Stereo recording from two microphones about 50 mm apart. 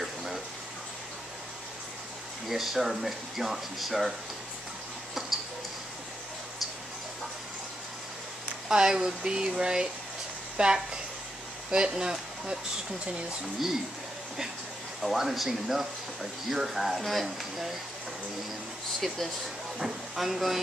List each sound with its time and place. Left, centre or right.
0.0 s a sound: centre
2.4 s speech: centre
8.6 s speech: centre
15.0 s speech: centre
18.9 s speech: centre